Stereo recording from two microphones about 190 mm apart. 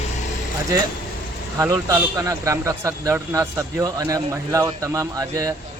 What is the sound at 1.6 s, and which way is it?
A man's voice, 15° right (ahead or behind).